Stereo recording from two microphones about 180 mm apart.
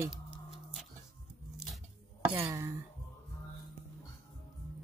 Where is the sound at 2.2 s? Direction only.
10° right (ahead or behind).